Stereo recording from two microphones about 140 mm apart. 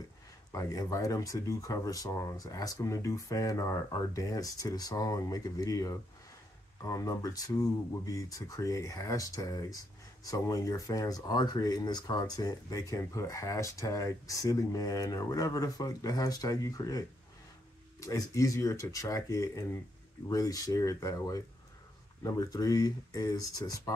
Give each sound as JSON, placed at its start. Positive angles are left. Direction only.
{"t": 0.5, "sound": "speech", "side_deg": 25}
{"t": 18.0, "sound": "speech", "side_deg": 25}